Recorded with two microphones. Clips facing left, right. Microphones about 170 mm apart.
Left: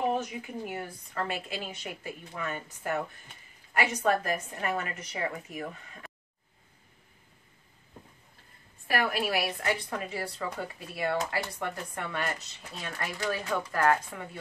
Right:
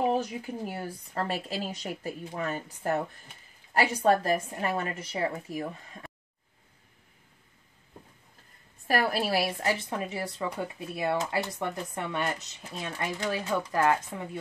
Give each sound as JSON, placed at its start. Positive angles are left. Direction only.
{"t": 0.1, "sound": "a woman's voice", "side_deg": -35}
{"t": 8.8, "sound": "a woman's voice", "side_deg": -40}